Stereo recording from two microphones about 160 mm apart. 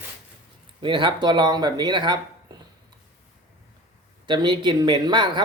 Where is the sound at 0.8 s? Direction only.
30° right (ahead or behind).